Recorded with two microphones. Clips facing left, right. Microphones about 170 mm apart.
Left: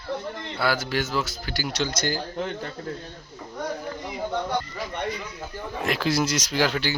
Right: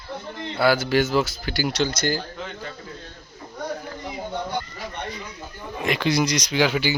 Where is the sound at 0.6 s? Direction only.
65° right (ahead or behind).